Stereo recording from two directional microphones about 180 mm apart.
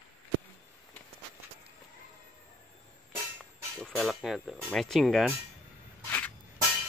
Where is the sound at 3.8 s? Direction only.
Centre (ahead or behind).